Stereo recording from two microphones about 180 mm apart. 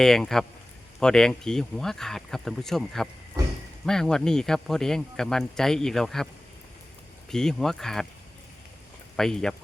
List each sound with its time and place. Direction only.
0.0 s speech: centre (ahead or behind)
3.4 s a sound: 20° right (ahead or behind)
3.8 s speech: 5° left (ahead or behind)
7.3 s speech: 5° left (ahead or behind)
9.1 s speech: 5° left (ahead or behind)